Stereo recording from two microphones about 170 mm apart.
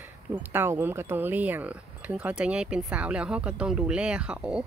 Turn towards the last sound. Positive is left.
turn(degrees=-5)  # may be behind; listen again after turning